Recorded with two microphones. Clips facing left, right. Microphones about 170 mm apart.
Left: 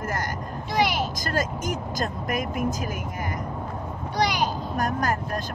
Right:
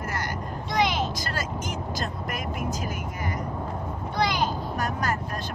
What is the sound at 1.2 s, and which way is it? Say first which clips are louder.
Vehicle: left 4 dB; 45° left (ahead or behind).